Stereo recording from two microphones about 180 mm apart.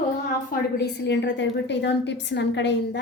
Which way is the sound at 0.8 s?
75° left (ahead or behind).